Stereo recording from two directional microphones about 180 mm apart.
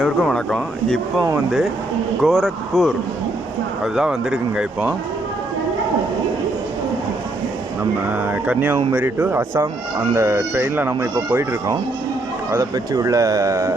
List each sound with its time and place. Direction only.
0.0 s speech: 5° left (ahead or behind)
3.9 s speech: 5° right (ahead or behind)
8.1 s speech: 10° right (ahead or behind)